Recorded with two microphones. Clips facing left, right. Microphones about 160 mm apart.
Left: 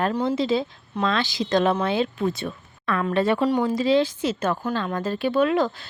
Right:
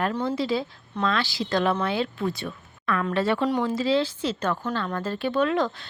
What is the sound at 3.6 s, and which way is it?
Speech, 15° left (ahead or behind).